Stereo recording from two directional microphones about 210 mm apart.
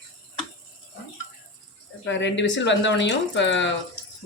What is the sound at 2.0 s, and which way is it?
Speech, 60° left (ahead or behind).